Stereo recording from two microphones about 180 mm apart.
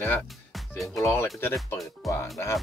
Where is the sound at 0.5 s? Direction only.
Centre (ahead or behind).